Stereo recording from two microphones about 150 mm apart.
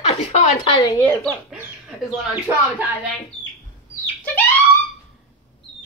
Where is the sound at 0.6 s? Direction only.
25° left (ahead or behind).